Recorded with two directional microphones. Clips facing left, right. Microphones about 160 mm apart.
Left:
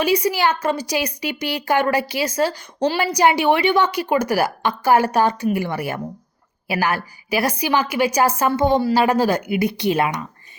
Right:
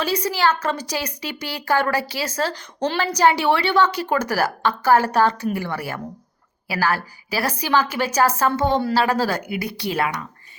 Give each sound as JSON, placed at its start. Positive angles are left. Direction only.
{"t": 0.0, "sound": "a woman's voice", "side_deg": 15}